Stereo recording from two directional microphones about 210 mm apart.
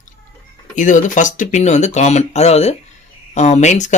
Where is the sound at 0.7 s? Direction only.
35° left (ahead or behind).